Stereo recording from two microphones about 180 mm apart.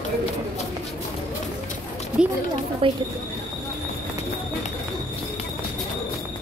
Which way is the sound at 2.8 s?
30° right (ahead or behind).